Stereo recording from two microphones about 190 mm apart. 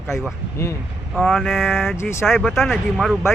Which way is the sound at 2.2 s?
Centre (ahead or behind).